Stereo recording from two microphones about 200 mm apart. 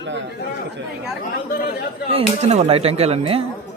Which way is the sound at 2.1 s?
30° right (ahead or behind).